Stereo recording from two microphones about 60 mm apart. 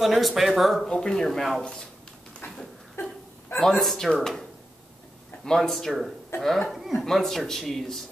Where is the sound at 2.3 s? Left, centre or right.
Centre.